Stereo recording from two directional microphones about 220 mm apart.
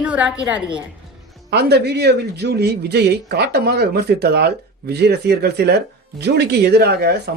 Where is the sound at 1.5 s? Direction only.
50° right (ahead or behind).